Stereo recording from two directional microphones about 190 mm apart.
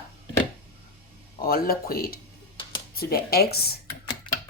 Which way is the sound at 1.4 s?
50° left (ahead or behind).